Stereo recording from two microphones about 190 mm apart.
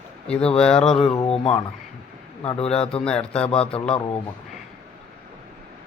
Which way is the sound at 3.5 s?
30° left (ahead or behind).